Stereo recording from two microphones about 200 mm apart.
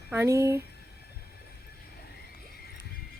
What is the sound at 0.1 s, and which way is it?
Speech, 15° right (ahead or behind).